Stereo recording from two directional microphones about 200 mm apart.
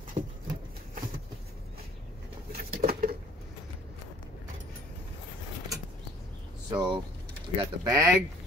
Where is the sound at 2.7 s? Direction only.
45° right (ahead or behind).